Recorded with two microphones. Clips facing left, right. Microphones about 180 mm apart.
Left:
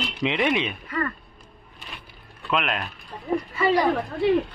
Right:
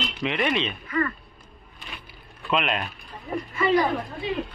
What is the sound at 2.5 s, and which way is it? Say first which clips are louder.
Speech: right 1 dB; centre (ahead or behind).